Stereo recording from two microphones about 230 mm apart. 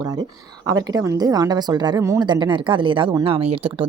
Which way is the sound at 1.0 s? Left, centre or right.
Centre.